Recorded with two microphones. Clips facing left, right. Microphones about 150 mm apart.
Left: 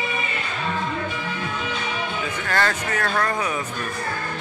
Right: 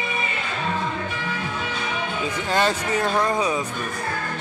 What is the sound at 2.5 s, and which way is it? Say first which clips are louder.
Speech: right 2 dB; 15° right (ahead or behind).